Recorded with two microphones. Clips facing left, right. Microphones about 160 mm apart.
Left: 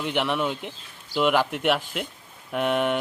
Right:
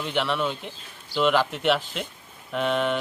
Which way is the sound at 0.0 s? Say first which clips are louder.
Left 1 dB; 15° left (ahead or behind).